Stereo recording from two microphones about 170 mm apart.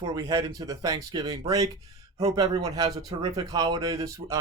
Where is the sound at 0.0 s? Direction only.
20° right (ahead or behind).